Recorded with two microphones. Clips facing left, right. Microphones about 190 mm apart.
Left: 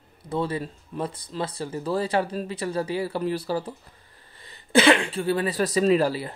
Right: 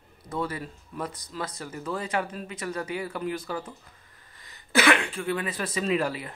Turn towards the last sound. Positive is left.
turn(degrees=35)  # may be behind; listen again after turning